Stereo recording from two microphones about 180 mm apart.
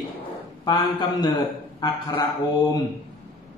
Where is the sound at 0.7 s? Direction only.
25° left (ahead or behind).